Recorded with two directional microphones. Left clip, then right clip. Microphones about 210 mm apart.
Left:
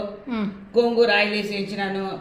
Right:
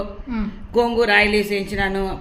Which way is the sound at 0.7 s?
55° right (ahead or behind).